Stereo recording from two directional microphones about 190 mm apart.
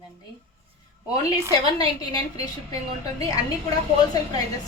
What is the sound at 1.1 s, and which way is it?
Speech, 20° left (ahead or behind).